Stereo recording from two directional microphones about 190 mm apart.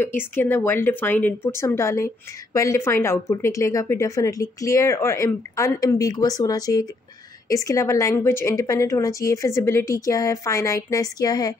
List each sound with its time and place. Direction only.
0.0 s speech: 10° left (ahead or behind)